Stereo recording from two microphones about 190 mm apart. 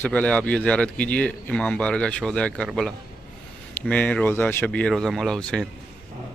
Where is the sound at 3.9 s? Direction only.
5° left (ahead or behind).